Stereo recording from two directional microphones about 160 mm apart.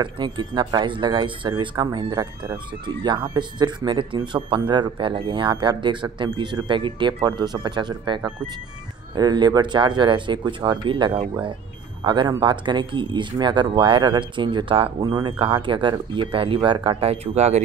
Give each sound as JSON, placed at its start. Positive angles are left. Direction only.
{"t": 0.0, "sound": "speech", "side_deg": -30}